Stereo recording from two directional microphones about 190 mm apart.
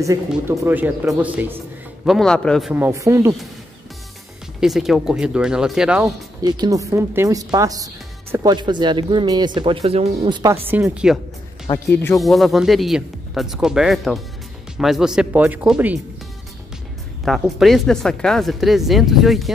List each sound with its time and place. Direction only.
0.3 s speech: 10° right (ahead or behind)
2.0 s speech: centre (ahead or behind)
2.7 s speech: 10° right (ahead or behind)
4.6 s speech: centre (ahead or behind)
6.4 s speech: 20° right (ahead or behind)
10.4 s speech: 15° right (ahead or behind)
11.7 s speech: 10° left (ahead or behind)
12.2 s speech: centre (ahead or behind)
17.2 s speech: centre (ahead or behind)